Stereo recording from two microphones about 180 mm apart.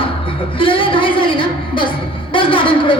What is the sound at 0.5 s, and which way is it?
Music, 30° left (ahead or behind).